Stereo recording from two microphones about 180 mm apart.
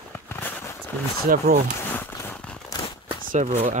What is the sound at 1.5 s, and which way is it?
Speech, 60° right (ahead or behind).